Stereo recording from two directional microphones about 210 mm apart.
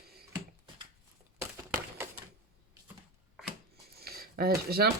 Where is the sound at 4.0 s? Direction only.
45° right (ahead or behind).